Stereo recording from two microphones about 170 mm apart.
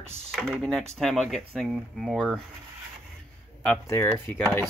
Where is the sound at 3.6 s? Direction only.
10° left (ahead or behind).